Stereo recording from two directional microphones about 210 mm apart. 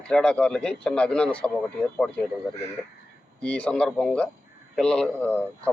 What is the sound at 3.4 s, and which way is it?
A man's voice, 5° left (ahead or behind).